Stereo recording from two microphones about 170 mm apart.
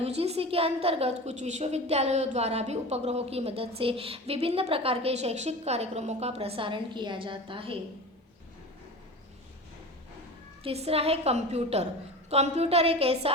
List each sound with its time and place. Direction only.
0.0 s a woman's voice: 35° right (ahead or behind)
10.6 s a woman's voice: 35° right (ahead or behind)